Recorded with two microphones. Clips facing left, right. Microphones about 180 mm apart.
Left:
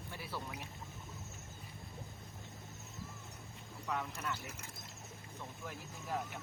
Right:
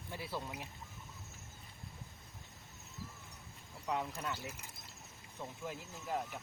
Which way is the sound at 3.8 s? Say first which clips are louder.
Right 2 dB; 20° right (ahead or behind).